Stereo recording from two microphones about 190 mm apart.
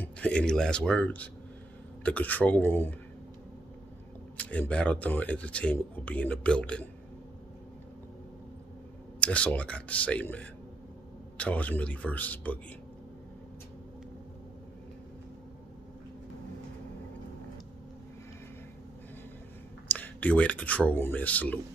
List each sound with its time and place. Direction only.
0.0 s speech: 5° left (ahead or behind)
4.4 s speech: 5° left (ahead or behind)
9.2 s speech: 5° left (ahead or behind)
19.9 s speech: 10° left (ahead or behind)